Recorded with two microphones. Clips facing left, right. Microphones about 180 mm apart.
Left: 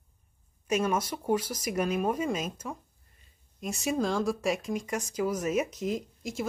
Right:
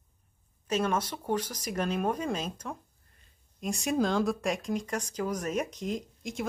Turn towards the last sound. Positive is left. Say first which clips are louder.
# left 1 dB
turn(degrees=5)  # may be behind; listen again after turning